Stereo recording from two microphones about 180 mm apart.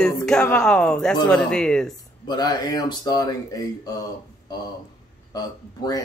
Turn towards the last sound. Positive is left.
turn(degrees=20)  # may be behind; listen again after turning